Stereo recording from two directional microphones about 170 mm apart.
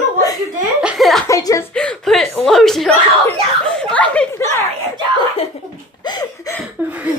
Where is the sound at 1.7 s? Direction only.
5° left (ahead or behind).